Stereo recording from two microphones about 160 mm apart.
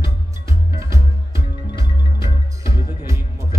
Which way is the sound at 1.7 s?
30° left (ahead or behind).